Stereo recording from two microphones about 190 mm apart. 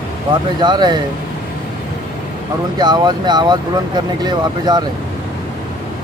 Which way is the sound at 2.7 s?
20° right (ahead or behind).